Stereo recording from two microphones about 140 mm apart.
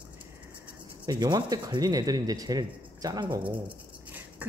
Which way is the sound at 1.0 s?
30° right (ahead or behind).